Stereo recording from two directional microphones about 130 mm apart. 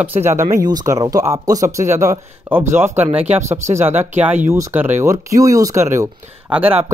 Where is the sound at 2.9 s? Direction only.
55° right (ahead or behind).